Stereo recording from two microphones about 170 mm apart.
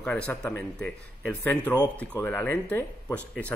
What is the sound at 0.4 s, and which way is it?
Speech, 5° left (ahead or behind).